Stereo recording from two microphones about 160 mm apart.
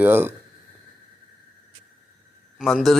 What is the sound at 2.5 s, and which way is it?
Speech, centre (ahead or behind).